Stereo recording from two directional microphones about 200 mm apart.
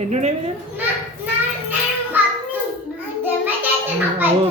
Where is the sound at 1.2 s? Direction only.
10° right (ahead or behind).